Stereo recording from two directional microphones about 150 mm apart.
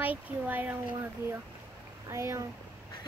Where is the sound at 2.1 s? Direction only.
20° right (ahead or behind).